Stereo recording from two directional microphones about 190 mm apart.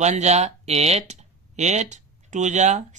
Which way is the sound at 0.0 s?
35° right (ahead or behind).